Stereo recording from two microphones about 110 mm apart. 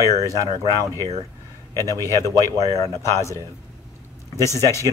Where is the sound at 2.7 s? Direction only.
30° left (ahead or behind).